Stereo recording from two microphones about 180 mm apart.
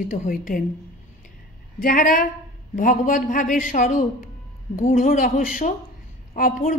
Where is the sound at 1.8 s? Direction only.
50° left (ahead or behind).